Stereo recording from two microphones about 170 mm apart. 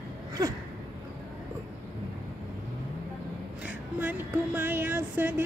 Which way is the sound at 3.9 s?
10° right (ahead or behind).